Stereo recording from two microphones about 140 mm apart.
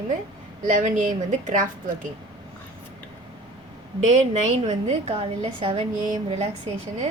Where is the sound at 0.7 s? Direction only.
65° right (ahead or behind).